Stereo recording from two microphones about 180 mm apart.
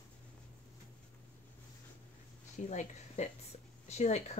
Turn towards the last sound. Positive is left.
turn(degrees=40)  # may be behind; listen again after turning